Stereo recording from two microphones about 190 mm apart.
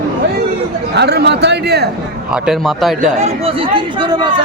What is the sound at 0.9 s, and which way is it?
Speech, 60° right (ahead or behind).